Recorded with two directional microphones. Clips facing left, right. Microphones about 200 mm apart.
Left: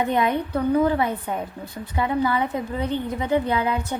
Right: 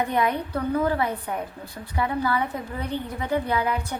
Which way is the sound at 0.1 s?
20° left (ahead or behind).